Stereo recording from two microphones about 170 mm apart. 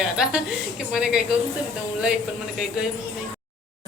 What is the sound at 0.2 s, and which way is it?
Speech, 5° right (ahead or behind).